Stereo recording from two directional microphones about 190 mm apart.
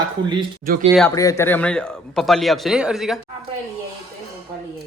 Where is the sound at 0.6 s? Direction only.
45° right (ahead or behind).